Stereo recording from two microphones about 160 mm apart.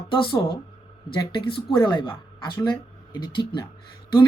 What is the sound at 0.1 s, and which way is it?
Speech, 30° left (ahead or behind).